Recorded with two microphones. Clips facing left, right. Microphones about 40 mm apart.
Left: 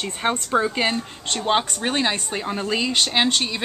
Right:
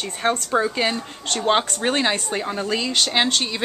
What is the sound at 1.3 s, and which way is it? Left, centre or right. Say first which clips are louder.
A woman's voice: right 2 dB; centre.